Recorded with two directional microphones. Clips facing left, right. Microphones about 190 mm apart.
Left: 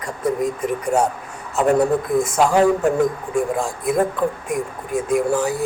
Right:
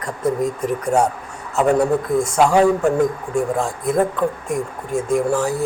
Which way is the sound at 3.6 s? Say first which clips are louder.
Right 1 dB; centre (ahead or behind).